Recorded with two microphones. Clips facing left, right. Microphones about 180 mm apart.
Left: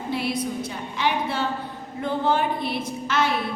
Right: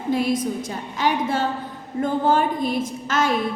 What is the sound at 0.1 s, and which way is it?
A woman's voice, 45° right (ahead or behind).